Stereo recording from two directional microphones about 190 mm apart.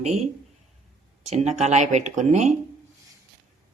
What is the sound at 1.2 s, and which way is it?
A man's voice, 35° right (ahead or behind).